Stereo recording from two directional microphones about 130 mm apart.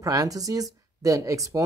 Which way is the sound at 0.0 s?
25° right (ahead or behind).